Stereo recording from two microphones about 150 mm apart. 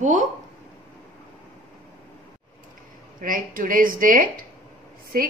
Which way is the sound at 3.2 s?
65° right (ahead or behind).